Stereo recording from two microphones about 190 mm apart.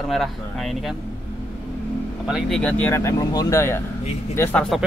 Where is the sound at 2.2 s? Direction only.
Centre (ahead or behind).